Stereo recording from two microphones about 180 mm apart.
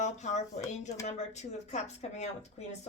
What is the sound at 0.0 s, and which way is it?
Speech, 40° left (ahead or behind).